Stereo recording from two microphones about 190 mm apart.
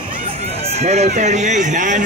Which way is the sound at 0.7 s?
35° right (ahead or behind).